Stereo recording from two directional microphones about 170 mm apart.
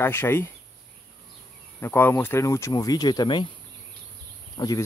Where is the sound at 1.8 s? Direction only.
10° left (ahead or behind).